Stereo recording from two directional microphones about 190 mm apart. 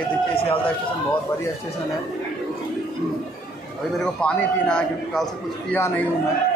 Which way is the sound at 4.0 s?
5° left (ahead or behind).